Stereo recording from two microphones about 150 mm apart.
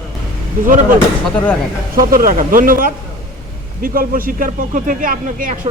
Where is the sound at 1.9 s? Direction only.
70° right (ahead or behind).